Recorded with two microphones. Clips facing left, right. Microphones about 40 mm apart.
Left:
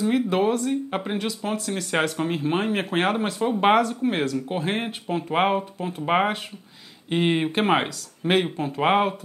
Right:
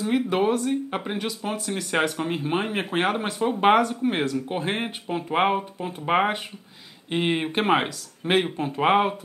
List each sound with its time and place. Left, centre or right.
0.0 s speech: centre